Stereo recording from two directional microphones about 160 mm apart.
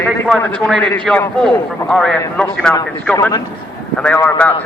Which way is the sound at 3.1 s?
20° left (ahead or behind).